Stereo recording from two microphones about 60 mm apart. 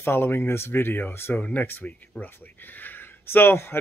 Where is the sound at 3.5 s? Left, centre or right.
Left.